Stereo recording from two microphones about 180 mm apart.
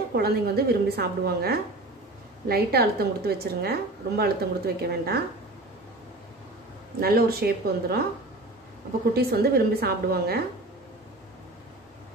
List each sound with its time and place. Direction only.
0.1 s a woman's voice: 60° right (ahead or behind)
7.0 s a woman's voice: 55° right (ahead or behind)
9.1 s a woman's voice: 60° right (ahead or behind)